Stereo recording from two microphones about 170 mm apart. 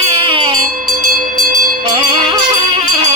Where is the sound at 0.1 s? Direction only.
30° right (ahead or behind).